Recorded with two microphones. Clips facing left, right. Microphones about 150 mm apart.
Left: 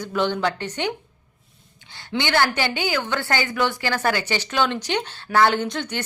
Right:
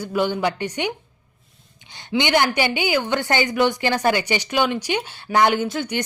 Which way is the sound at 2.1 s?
15° right (ahead or behind).